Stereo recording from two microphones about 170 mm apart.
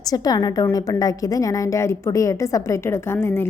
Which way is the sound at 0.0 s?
20° left (ahead or behind).